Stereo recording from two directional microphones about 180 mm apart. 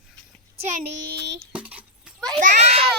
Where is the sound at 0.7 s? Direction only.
55° right (ahead or behind).